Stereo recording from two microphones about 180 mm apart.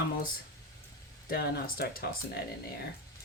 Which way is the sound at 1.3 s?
60° left (ahead or behind).